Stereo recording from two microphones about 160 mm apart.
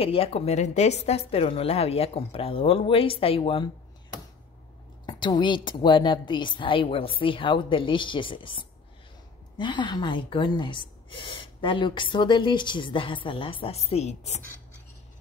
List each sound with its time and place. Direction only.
0.0 s speech: 35° left (ahead or behind)
5.0 s speech: 30° left (ahead or behind)